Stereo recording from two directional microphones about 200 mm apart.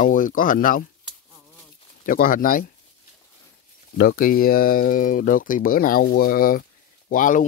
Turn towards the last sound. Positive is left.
turn(degrees=40)  # may be behind; listen again after turning